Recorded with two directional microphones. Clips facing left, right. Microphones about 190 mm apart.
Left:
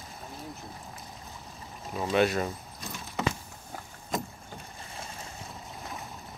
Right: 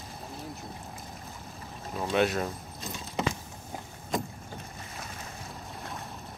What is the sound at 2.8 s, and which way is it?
Keys jangling, 20° right (ahead or behind).